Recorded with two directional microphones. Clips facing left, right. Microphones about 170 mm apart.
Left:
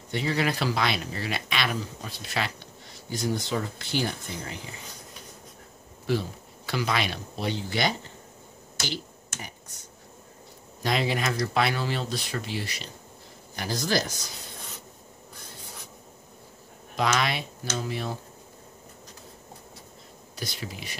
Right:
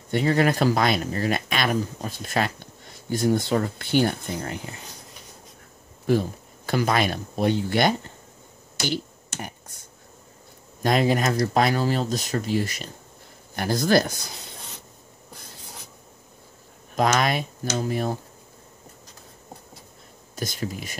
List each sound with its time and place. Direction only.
0.1 s speech: 50° right (ahead or behind)
6.0 s speech: 50° right (ahead or behind)
9.4 s finger snapping: 50° right (ahead or behind)
10.8 s speech: 45° right (ahead or behind)
16.9 s speech: 45° right (ahead or behind)
20.3 s speech: 45° right (ahead or behind)